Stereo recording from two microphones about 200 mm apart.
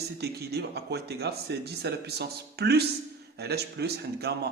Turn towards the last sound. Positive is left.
turn(degrees=-55)  # may be behind; listen again after turning